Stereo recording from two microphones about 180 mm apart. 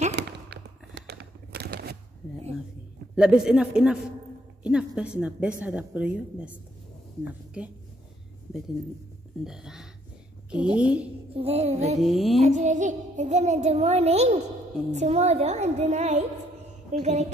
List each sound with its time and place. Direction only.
0.1 s a sound: 60° right (ahead or behind)
3.2 s a woman's voice: 5° right (ahead or behind)
7.6 s a woman's voice: 5° right (ahead or behind)
9.4 s a woman's voice: 5° right (ahead or behind)
11.3 s music: 35° right (ahead or behind)
12.0 s a woman's voice: centre (ahead or behind)
12.4 s music: 40° right (ahead or behind)